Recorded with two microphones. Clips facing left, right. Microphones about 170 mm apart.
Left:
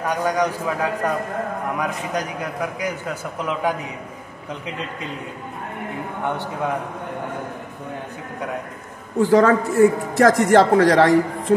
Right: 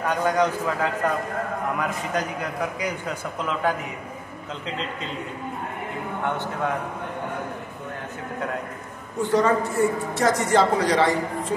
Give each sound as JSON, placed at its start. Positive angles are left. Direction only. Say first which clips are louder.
{"t": 0.0, "sound": "a man's voice", "louder": "left 1 dB", "side_deg": 10}
{"t": 9.2, "sound": "speech", "louder": "left 5 dB", "side_deg": 90}